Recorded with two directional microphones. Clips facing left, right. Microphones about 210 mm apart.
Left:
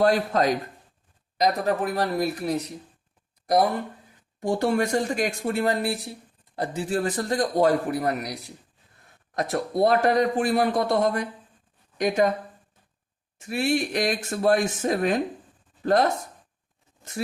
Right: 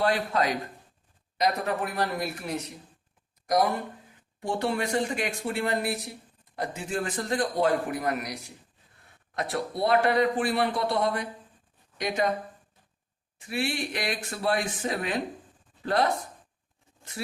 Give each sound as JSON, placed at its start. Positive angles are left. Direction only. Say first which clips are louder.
{"t": 0.0, "sound": "a man's voice", "louder": "left 5 dB", "side_deg": 40}
{"t": 4.4, "sound": "a man's voice", "louder": "left 5 dB", "side_deg": 45}
{"t": 13.4, "sound": "a man's voice", "louder": "left 6 dB", "side_deg": 45}